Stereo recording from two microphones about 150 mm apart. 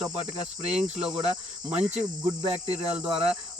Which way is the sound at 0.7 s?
45° right (ahead or behind).